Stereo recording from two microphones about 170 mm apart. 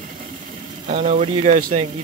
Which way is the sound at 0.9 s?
40° right (ahead or behind).